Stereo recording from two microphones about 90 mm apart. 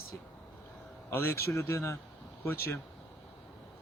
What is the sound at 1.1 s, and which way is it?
Speech, 25° left (ahead or behind).